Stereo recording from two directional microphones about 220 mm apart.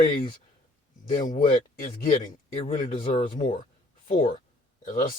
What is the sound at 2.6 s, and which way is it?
Speech, 25° left (ahead or behind).